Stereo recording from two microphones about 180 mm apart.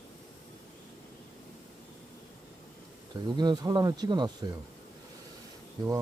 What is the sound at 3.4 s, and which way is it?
Speech, 25° right (ahead or behind).